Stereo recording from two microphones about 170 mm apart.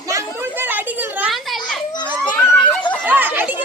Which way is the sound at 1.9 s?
25° left (ahead or behind).